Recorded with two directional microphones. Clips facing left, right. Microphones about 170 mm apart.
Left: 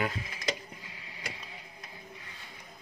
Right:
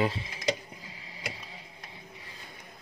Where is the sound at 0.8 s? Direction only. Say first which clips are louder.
Right 3 dB; 35° right (ahead or behind).